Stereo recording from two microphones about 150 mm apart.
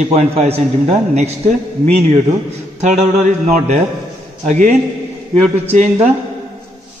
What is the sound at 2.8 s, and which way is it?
A man's voice, 50° right (ahead or behind).